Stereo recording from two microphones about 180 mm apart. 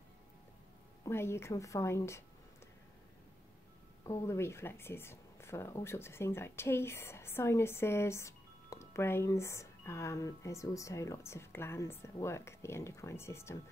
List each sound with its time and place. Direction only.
1.0 s speech: 15° left (ahead or behind)
4.0 s speech: 15° left (ahead or behind)